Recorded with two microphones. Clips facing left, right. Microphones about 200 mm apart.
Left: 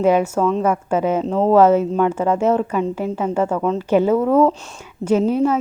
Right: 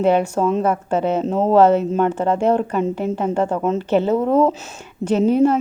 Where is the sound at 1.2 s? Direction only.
5° right (ahead or behind).